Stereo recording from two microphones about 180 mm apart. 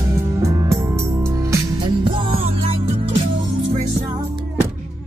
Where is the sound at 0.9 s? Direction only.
15° right (ahead or behind).